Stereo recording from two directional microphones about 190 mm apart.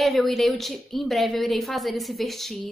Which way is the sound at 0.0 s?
Centre (ahead or behind).